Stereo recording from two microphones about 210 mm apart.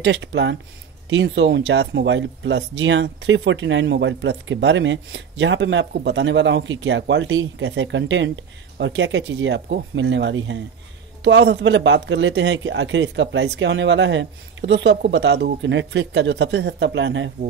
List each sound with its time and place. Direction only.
0.0 s speech: 55° right (ahead or behind)